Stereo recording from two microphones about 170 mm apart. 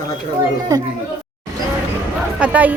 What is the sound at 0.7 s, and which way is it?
Speech, 20° right (ahead or behind).